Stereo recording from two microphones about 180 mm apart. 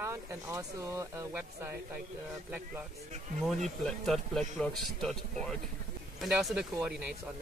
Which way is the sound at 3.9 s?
Centre (ahead or behind).